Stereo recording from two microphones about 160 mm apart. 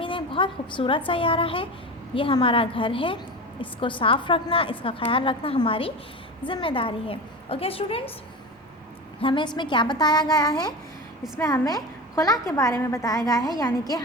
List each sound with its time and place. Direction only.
0.0 s a woman's voice: 30° left (ahead or behind)
9.2 s a woman's voice: 30° left (ahead or behind)